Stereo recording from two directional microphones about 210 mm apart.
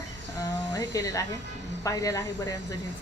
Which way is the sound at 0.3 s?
15° left (ahead or behind).